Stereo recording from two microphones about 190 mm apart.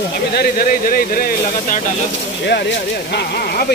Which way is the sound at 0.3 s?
50° left (ahead or behind).